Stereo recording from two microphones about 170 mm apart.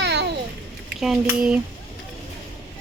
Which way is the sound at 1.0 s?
5° right (ahead or behind).